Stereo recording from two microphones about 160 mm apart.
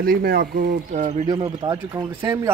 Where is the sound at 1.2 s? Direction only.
30° right (ahead or behind).